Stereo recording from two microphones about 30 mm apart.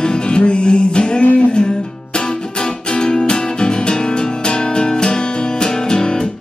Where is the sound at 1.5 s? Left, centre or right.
Left.